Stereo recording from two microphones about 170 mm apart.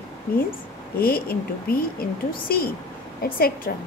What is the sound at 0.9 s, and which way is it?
A woman's voice, 65° left (ahead or behind).